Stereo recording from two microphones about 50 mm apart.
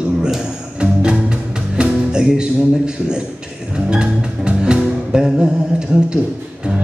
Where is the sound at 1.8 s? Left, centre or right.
Centre.